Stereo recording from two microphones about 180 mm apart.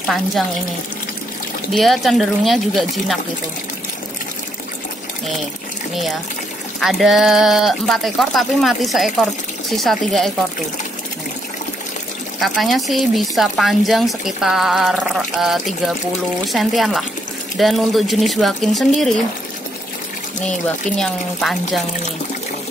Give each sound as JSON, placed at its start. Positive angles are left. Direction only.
{"t": 1.7, "sound": "speech", "side_deg": 0}
{"t": 6.8, "sound": "speech", "side_deg": 0}
{"t": 12.4, "sound": "speech", "side_deg": 0}
{"t": 20.4, "sound": "speech", "side_deg": 5}